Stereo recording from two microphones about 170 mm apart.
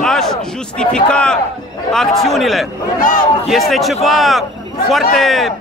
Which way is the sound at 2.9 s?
50° left (ahead or behind).